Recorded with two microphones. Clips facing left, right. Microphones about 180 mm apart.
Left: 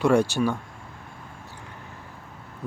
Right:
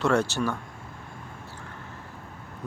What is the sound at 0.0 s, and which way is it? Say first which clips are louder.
Speech: left 4 dB; 10° left (ahead or behind).